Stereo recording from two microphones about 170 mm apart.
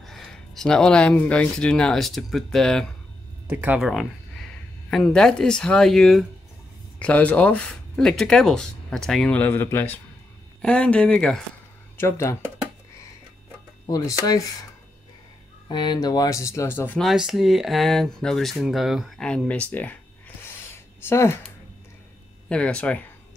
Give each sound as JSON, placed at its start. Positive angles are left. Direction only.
{"t": 0.0, "sound": "speech", "side_deg": 0}
{"t": 3.4, "sound": "speech", "side_deg": -10}
{"t": 12.0, "sound": "speech", "side_deg": 15}
{"t": 13.8, "sound": "speech", "side_deg": 20}
{"t": 15.7, "sound": "speech", "side_deg": 25}
{"t": 17.0, "sound": "speech", "side_deg": 0}
{"t": 21.0, "sound": "speech", "side_deg": 15}
{"t": 22.5, "sound": "speech", "side_deg": 5}